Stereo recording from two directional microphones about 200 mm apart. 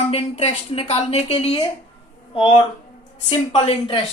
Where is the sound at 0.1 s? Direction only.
30° left (ahead or behind).